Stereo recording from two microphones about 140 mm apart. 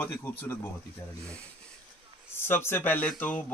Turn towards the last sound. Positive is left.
turn(degrees=10)  # may be behind; listen again after turning